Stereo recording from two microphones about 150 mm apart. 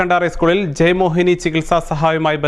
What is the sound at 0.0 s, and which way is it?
Speech, centre (ahead or behind).